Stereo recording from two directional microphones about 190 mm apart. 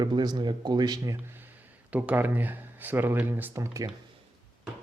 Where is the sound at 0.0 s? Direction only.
20° right (ahead or behind).